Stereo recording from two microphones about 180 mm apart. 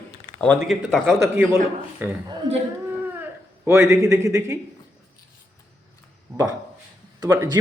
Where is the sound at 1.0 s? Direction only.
15° right (ahead or behind).